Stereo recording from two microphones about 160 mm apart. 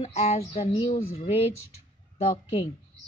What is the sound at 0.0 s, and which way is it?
A woman's voice, 40° left (ahead or behind).